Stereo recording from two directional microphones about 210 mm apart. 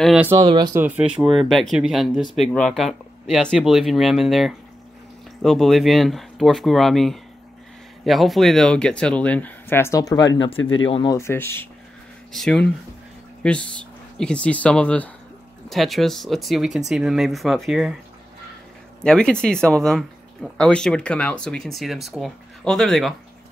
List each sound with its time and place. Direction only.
0.0 s speech: centre (ahead or behind)
0.4 s speech: 20° right (ahead or behind)
0.7 s speech: 5° right (ahead or behind); by 10.5 s 20° left (ahead or behind)
10.5 s speech: 70° left (ahead or behind)
10.9 s speech: 25° left (ahead or behind)
11.1 s speech: 10° left (ahead or behind)
19.0 s speech: 5° left (ahead or behind)